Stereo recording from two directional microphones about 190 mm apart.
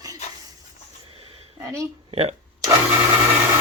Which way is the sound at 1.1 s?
30° right (ahead or behind).